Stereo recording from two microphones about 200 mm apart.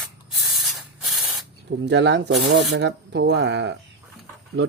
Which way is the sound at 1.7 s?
60° right (ahead or behind).